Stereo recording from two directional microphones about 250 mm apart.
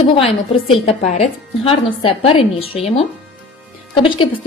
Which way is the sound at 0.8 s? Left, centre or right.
Left.